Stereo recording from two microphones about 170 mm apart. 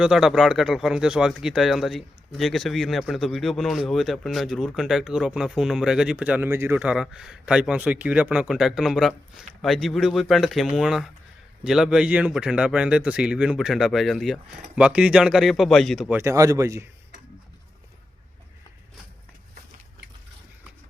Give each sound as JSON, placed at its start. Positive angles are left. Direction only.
{"t": 0.0, "sound": "speech", "side_deg": -5}
{"t": 16.1, "sound": "speech", "side_deg": -15}